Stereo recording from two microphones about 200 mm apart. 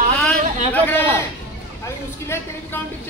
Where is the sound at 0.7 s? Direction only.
10° left (ahead or behind).